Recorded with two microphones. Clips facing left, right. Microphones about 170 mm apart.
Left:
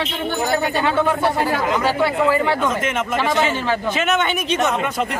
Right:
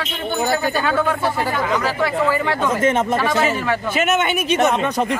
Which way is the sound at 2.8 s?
30° right (ahead or behind).